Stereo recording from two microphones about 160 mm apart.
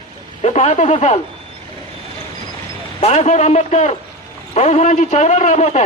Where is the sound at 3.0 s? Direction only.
45° left (ahead or behind).